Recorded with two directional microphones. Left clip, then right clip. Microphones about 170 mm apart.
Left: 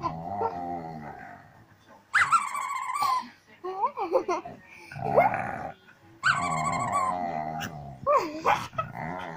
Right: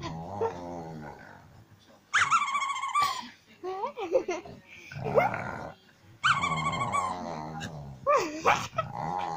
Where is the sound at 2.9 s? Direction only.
30° right (ahead or behind).